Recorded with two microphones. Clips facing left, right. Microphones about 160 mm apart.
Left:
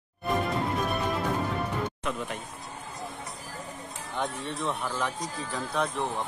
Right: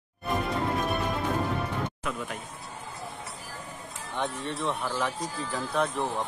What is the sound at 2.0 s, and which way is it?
Speech, centre (ahead or behind).